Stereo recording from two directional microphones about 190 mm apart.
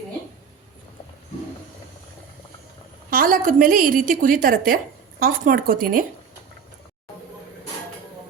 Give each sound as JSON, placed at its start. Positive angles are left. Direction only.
{"t": 3.1, "sound": "a woman's voice", "side_deg": -50}